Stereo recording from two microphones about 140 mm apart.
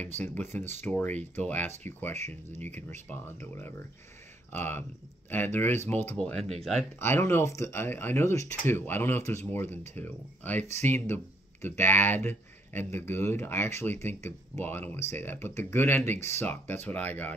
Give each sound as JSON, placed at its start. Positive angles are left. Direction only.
{"t": 0.2, "sound": "speech", "side_deg": 15}
{"t": 6.3, "sound": "speech", "side_deg": -45}
{"t": 7.0, "sound": "speech", "side_deg": 15}